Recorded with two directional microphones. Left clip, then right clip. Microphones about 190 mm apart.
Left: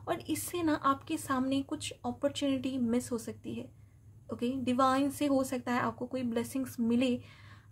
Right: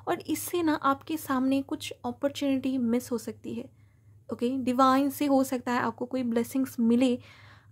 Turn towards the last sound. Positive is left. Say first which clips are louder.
# right 5 dB
turn(degrees=-35)  # may be behind; listen again after turning